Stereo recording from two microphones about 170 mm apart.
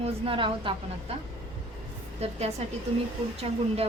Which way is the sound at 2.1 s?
40° right (ahead or behind).